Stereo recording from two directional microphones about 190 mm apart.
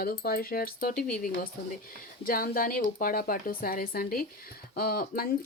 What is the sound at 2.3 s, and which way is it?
Speech, 50° left (ahead or behind).